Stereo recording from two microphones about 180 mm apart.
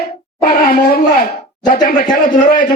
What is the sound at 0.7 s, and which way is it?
Speech, 55° left (ahead or behind).